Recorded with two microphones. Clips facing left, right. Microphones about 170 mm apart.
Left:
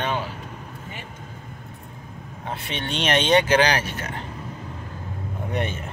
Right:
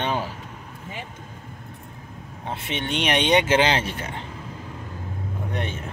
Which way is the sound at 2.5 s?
20° right (ahead or behind).